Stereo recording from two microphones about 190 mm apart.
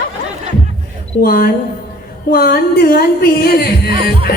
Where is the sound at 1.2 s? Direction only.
50° left (ahead or behind).